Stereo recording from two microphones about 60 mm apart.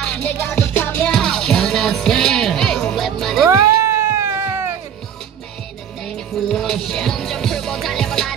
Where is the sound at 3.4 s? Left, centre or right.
Right.